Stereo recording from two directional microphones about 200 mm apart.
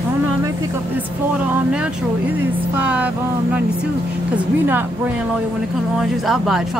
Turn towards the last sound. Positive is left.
turn(degrees=0)  # may be behind; listen again after turning